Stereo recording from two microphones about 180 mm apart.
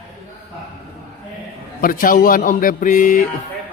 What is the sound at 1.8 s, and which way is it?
A man's voice, 50° left (ahead or behind).